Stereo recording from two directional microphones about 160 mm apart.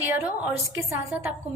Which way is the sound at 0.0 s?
10° right (ahead or behind).